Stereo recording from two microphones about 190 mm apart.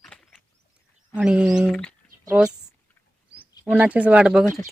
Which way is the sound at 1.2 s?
5° right (ahead or behind).